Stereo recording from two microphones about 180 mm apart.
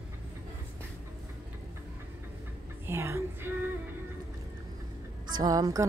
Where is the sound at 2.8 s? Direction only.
15° right (ahead or behind).